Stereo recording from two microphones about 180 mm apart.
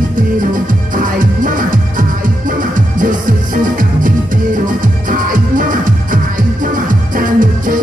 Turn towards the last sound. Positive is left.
turn(degrees=-50)  # may be behind; listen again after turning